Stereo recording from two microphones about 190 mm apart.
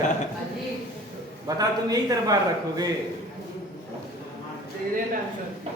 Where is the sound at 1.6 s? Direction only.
20° right (ahead or behind).